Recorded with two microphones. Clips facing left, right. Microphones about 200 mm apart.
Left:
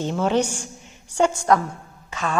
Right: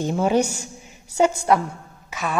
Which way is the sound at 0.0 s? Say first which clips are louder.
Right 1 dB; 10° right (ahead or behind).